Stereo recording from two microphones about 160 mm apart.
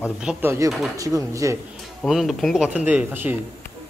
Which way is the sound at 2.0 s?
Centre (ahead or behind).